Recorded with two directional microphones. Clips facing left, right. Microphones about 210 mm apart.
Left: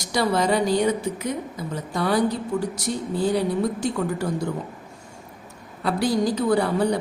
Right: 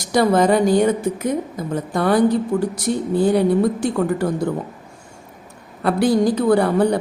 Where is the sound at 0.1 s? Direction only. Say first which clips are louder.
Right 6 dB; 50° right (ahead or behind).